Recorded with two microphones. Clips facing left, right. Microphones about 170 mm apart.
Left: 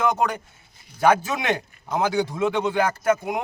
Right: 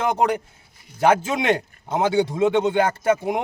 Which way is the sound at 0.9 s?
25° right (ahead or behind).